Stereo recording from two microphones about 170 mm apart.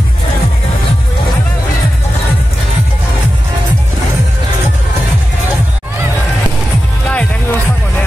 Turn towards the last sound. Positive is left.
turn(degrees=5)  # may be behind; listen again after turning